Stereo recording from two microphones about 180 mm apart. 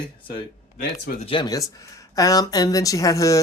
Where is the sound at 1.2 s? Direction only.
30° left (ahead or behind).